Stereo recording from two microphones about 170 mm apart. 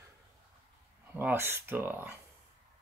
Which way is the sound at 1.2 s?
10° right (ahead or behind).